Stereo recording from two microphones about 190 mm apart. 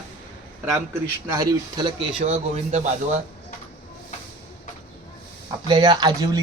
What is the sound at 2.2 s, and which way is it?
A man's voice, 35° right (ahead or behind).